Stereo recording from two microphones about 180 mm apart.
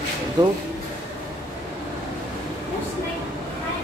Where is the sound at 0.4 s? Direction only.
20° right (ahead or behind).